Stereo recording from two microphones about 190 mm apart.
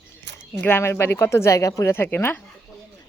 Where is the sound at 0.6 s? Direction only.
10° left (ahead or behind).